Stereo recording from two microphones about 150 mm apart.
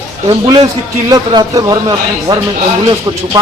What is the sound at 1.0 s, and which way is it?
Speech, 30° right (ahead or behind).